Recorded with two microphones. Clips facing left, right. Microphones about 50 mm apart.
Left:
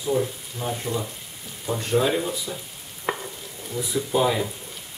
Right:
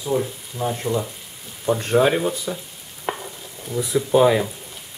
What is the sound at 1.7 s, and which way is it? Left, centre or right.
Speech, right.